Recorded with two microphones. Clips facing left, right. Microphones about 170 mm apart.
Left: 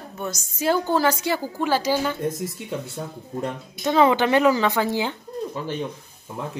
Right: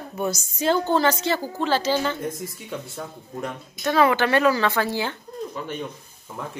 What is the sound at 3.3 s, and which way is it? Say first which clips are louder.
Speech: left 3 dB; 20° left (ahead or behind).